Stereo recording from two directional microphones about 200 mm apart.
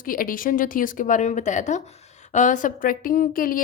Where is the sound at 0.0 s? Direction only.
45° left (ahead or behind).